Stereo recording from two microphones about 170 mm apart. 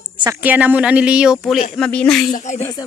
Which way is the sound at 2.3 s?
45° left (ahead or behind).